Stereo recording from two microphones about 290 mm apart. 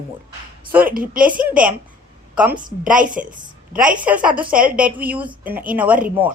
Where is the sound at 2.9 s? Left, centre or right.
Right.